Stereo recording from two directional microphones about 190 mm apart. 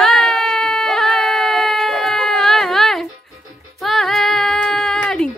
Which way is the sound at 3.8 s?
Centre (ahead or behind).